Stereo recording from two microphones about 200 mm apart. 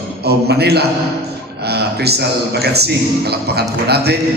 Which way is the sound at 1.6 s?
55° right (ahead or behind).